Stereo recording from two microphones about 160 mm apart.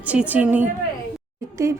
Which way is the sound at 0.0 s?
10° right (ahead or behind).